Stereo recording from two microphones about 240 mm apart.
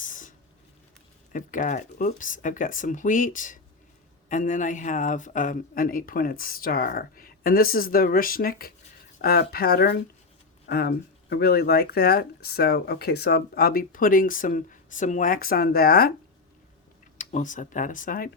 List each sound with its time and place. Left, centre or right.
0.0 s a sound: left
1.3 s speech: left
17.2 s speech: left